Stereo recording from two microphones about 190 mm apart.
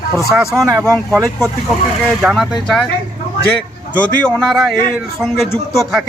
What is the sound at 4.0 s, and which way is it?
A man's voice, 5° left (ahead or behind).